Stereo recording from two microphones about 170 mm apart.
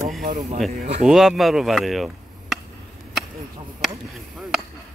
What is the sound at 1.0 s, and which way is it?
Speech, centre (ahead or behind).